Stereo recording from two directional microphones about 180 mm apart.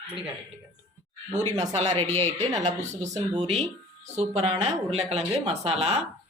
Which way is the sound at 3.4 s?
35° right (ahead or behind).